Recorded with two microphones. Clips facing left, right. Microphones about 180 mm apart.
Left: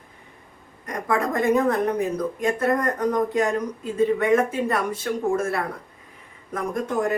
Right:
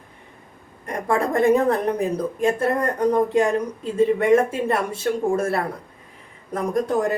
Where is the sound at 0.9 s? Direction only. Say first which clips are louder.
Right 2 dB; 30° right (ahead or behind).